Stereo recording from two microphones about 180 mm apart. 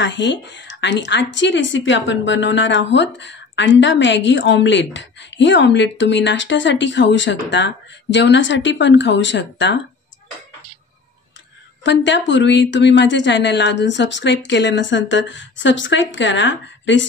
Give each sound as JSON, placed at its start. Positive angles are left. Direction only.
{"t": 0.0, "sound": "a woman's voice", "side_deg": 90}
{"t": 11.8, "sound": "a woman's voice", "side_deg": 85}